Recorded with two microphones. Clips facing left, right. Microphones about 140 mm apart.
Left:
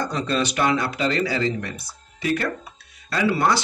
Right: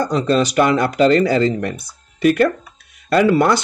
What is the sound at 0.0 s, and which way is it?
Speech, 40° right (ahead or behind).